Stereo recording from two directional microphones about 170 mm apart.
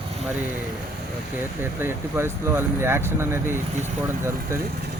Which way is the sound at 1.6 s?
15° right (ahead or behind).